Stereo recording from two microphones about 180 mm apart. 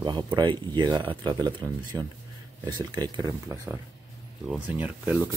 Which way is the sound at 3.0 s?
20° right (ahead or behind).